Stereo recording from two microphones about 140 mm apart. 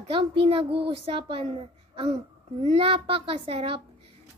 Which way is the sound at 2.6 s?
45° right (ahead or behind).